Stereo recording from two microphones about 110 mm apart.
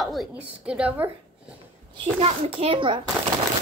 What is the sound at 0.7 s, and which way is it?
Speech, 10° right (ahead or behind).